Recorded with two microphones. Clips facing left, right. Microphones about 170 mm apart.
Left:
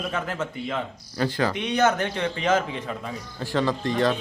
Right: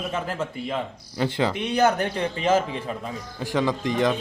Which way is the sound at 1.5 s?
10° right (ahead or behind).